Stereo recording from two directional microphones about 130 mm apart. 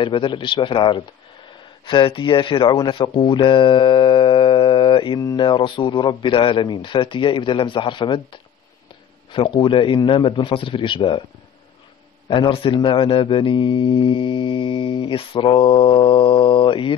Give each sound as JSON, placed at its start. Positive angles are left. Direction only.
{"t": 0.0, "sound": "speech", "side_deg": 40}
{"t": 12.3, "sound": "speech", "side_deg": 40}